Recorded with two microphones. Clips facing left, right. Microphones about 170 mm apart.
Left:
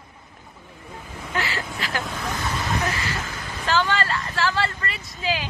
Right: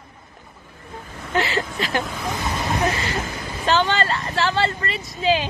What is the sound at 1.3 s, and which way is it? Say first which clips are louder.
Speech: right 6 dB; 25° right (ahead or behind).